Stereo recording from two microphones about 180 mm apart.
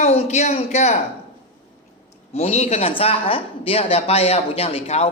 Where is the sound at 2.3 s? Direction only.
35° left (ahead or behind).